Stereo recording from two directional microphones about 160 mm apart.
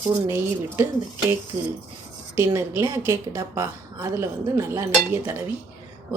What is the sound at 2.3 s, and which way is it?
A woman's voice, 15° right (ahead or behind).